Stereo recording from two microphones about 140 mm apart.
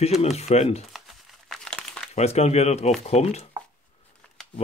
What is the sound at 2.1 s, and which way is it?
Speech, 50° left (ahead or behind).